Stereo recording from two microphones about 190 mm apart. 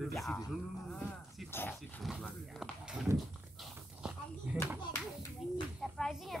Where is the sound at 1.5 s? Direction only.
10° left (ahead or behind).